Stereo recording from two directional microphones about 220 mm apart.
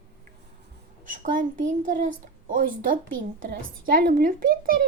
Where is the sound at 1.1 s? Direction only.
35° right (ahead or behind).